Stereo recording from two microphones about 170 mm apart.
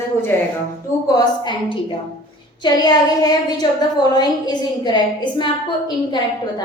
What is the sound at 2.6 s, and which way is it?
A woman's voice, 25° left (ahead or behind).